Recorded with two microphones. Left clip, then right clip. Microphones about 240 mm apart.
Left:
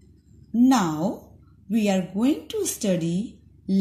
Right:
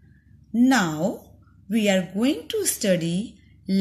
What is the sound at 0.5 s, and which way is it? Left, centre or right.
Speech, centre.